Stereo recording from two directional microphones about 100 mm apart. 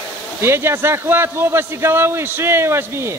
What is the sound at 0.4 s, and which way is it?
A man's voice, 25° right (ahead or behind).